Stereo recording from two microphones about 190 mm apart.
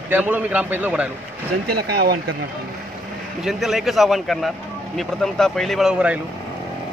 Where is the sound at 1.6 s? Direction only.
55° right (ahead or behind).